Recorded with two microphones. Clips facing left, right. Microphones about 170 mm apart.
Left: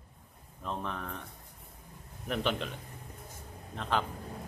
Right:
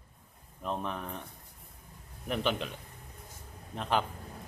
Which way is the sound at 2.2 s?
5° right (ahead or behind).